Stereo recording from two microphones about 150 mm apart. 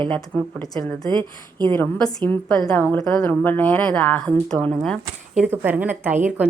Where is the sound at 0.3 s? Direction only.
10° left (ahead or behind).